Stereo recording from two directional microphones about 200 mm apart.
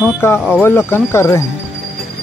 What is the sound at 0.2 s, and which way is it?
Speech, 15° left (ahead or behind).